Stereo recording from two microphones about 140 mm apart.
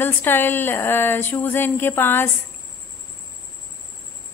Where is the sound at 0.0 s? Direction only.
15° left (ahead or behind).